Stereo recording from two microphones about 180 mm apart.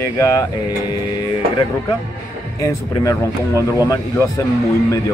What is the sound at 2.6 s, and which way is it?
Speech, 15° left (ahead or behind).